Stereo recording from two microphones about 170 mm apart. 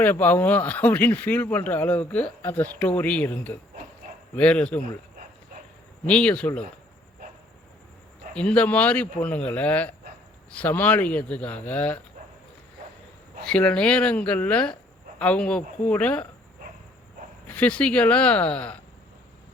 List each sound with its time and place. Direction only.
0.0 s speech: 10° left (ahead or behind)
6.1 s speech: 5° left (ahead or behind)
8.3 s speech: 5° left (ahead or behind)
13.4 s speech: 5° left (ahead or behind)
17.5 s speech: 10° left (ahead or behind)